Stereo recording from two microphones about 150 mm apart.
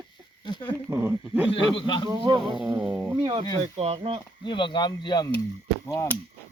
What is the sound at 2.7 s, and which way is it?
Speech, 5° right (ahead or behind).